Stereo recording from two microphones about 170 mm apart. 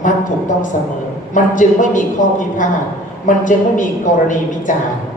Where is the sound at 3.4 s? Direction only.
50° left (ahead or behind).